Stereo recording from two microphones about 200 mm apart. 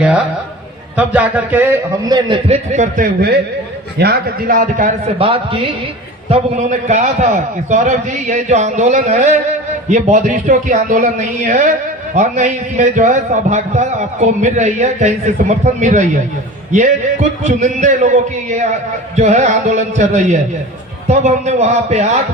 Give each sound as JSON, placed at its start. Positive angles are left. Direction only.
{"t": 0.9, "sound": "a man's voice", "side_deg": -5}
{"t": 2.7, "sound": "a man's voice", "side_deg": -40}
{"t": 17.4, "sound": "a man's voice", "side_deg": -35}
{"t": 19.1, "sound": "a man's voice", "side_deg": -35}